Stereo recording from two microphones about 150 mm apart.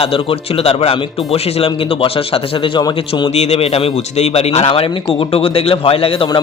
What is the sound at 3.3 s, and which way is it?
Speech, 45° left (ahead or behind).